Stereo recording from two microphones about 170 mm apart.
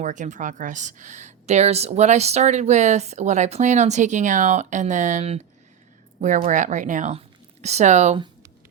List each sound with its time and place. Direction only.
0.0 s a woman's voice: 45° right (ahead or behind)